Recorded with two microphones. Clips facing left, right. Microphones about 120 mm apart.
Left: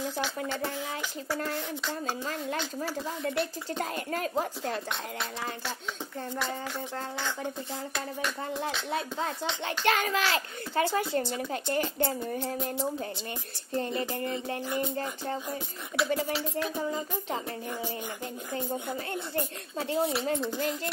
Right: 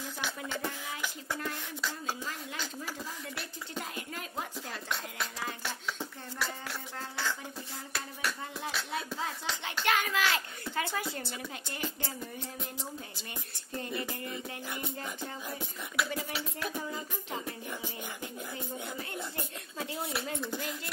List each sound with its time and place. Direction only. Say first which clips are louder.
1.4 s speech: left 5 dB; 40° left (ahead or behind)
9.8 s a child's voice: left 3 dB; 35° left (ahead or behind)
11.1 s speech: left 10 dB; 45° left (ahead or behind)
13.7 s a child's voice: left 7 dB; 30° left (ahead or behind)
16.0 s a sound: left 6 dB; 30° left (ahead or behind)
19.8 s a child's voice: left 8 dB; 30° left (ahead or behind)
20.5 s speech: left 7 dB; 45° left (ahead or behind)